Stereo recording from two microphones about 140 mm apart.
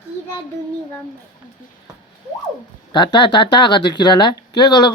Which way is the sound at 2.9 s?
35° left (ahead or behind).